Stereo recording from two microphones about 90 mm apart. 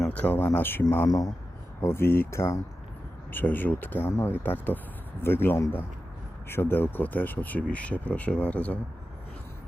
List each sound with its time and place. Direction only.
0.0 s speech: 15° left (ahead or behind)
1.0 s speech: 45° left (ahead or behind)
1.8 s speech: 25° left (ahead or behind)